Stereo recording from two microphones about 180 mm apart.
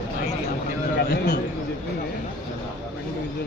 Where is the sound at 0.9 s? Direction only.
65° left (ahead or behind).